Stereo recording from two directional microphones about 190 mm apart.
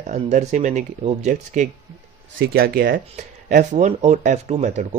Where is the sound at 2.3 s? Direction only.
55° right (ahead or behind).